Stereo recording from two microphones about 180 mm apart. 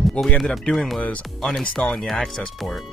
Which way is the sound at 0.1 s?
5° left (ahead or behind).